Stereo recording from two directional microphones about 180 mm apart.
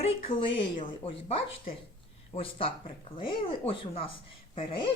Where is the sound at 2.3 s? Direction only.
30° left (ahead or behind).